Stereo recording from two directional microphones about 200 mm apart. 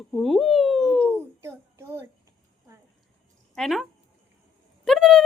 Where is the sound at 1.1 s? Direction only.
10° right (ahead or behind).